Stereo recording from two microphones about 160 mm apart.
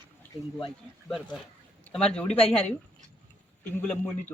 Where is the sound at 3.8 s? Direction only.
10° left (ahead or behind).